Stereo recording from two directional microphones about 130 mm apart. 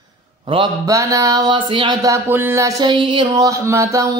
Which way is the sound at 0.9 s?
25° right (ahead or behind).